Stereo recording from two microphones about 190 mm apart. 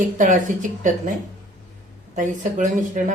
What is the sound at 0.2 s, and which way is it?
Speech, 40° right (ahead or behind).